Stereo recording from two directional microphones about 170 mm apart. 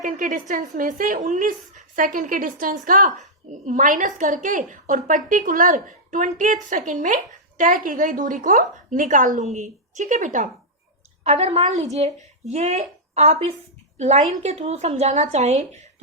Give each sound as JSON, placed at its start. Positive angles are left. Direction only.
{"t": 0.0, "sound": "a woman's voice", "side_deg": -50}